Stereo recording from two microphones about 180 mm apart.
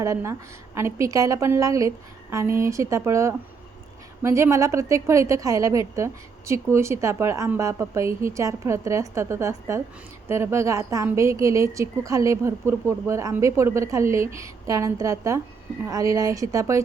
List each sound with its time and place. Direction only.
0.0 s a woman's voice: 15° right (ahead or behind)